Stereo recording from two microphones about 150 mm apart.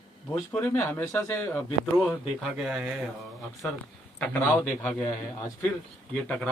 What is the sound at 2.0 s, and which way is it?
Speech, centre (ahead or behind).